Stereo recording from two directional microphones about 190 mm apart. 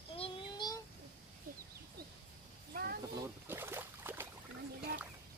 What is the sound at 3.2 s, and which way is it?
Boat, 10° right (ahead or behind).